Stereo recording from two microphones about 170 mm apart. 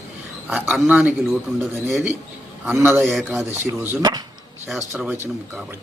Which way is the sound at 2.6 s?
10° right (ahead or behind).